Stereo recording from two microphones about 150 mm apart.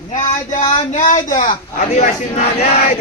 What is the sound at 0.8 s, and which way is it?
A man's voice, 55° left (ahead or behind).